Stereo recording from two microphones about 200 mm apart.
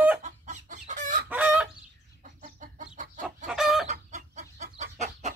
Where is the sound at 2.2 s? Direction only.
35° right (ahead or behind).